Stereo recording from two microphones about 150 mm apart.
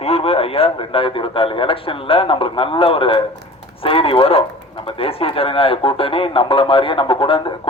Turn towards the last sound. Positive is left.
turn(degrees=35)  # may be behind; listen again after turning